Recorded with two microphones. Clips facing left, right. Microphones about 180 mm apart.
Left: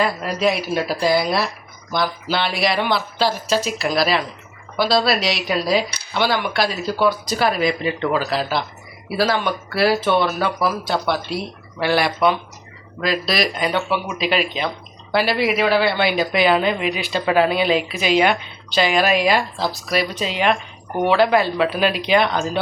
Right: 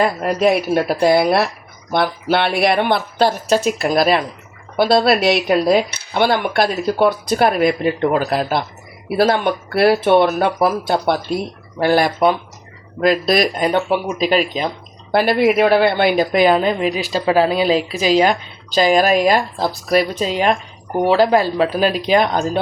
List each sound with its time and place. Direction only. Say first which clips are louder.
0.0 s a woman's voice: right 4 dB; 50° right (ahead or behind)
15.1 s a woman's voice: right 5 dB; 50° right (ahead or behind)